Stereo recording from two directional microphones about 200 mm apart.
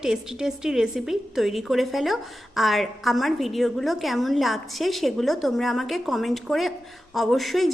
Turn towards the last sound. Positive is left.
turn(degrees=0)  # may be behind; listen again after turning